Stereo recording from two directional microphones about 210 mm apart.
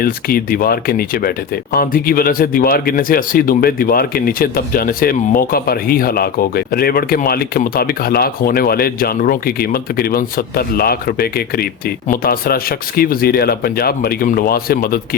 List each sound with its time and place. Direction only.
0.0 s speech: 45° left (ahead or behind)